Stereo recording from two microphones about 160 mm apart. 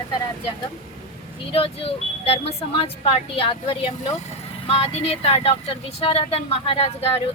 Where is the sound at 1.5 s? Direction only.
35° left (ahead or behind).